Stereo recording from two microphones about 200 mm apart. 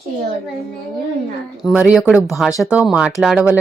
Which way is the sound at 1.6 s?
5° right (ahead or behind).